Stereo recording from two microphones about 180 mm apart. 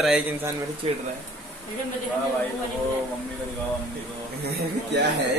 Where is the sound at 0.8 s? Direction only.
35° right (ahead or behind).